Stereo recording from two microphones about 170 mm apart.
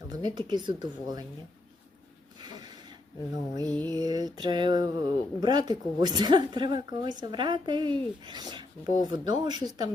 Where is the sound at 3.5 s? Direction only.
20° right (ahead or behind).